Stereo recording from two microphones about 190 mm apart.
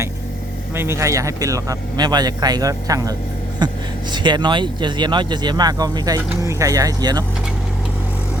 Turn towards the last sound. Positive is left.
turn(degrees=-20)  # may be behind; listen again after turning